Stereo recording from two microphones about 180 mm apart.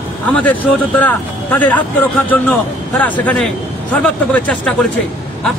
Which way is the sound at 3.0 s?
10° left (ahead or behind).